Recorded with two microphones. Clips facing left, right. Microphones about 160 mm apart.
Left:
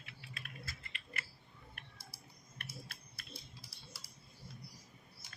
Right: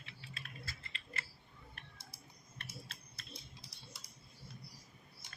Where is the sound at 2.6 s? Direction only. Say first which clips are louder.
Left 1 dB; 25° right (ahead or behind).